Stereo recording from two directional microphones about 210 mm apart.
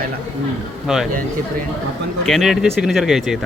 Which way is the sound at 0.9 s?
Centre (ahead or behind).